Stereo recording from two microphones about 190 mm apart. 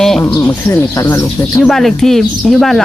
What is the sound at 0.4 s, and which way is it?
Speech, 10° left (ahead or behind).